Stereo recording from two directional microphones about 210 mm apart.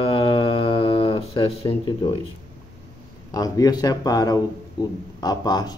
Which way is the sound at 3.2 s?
15° left (ahead or behind).